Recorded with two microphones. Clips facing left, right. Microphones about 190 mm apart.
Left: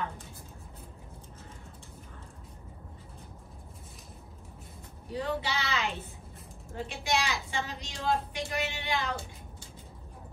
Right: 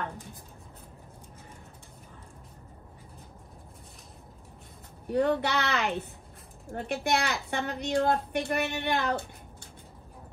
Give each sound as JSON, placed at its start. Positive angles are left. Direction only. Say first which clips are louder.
{"t": 5.1, "sound": "a woman's voice", "louder": "right 7 dB", "side_deg": -60}